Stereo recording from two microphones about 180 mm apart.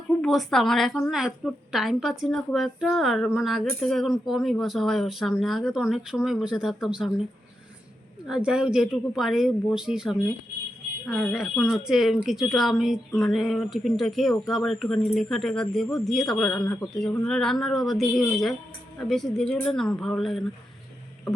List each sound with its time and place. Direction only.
0.2 s a woman's voice: centre (ahead or behind)
8.3 s a woman's voice: 5° right (ahead or behind)
16.8 s speech: 20° left (ahead or behind)
17.2 s a woman's voice: 5° left (ahead or behind)